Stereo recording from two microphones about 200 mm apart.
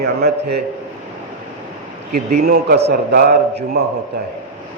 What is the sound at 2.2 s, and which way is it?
Speech, 50° right (ahead or behind).